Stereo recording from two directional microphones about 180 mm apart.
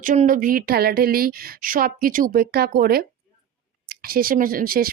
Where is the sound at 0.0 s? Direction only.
45° right (ahead or behind).